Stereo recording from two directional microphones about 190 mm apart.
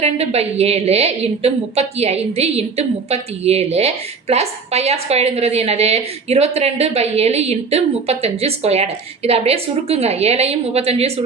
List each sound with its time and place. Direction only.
0.0 s a woman's voice: 35° right (ahead or behind)